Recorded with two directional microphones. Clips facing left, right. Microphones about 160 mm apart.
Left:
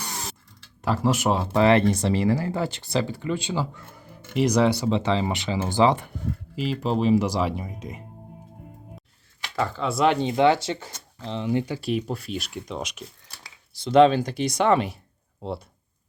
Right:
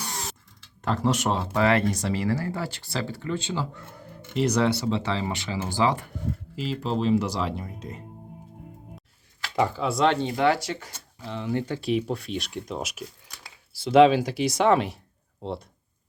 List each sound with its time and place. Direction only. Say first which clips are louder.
0.8 s speech: left 2 dB; 5° left (ahead or behind)
1.5 s speech: left 4 dB; 25° left (ahead or behind)
9.6 s speech: right 3 dB; 15° right (ahead or behind)
9.8 s speech: left 2 dB; centre (ahead or behind)
10.1 s speech: left 6 dB; 20° left (ahead or behind); by 15.6 s 5° left (ahead or behind)